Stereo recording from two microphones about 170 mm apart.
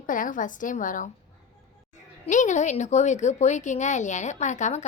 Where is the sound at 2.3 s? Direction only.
45° left (ahead or behind).